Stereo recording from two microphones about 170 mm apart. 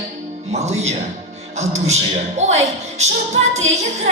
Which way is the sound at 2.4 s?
40° right (ahead or behind).